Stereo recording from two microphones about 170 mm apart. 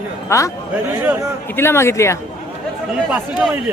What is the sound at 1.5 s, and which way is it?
Speech, 15° left (ahead or behind).